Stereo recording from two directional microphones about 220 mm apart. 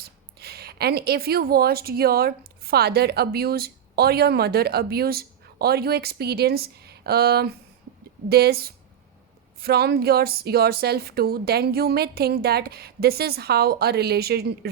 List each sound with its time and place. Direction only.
0.0 s a woman's voice: 45° right (ahead or behind)